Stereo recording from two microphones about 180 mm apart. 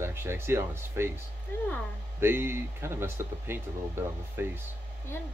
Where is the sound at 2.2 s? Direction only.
15° right (ahead or behind).